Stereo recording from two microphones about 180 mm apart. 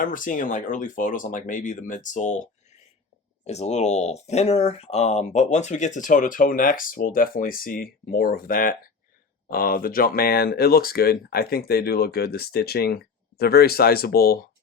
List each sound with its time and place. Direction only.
0.0 s speech: 50° left (ahead or behind)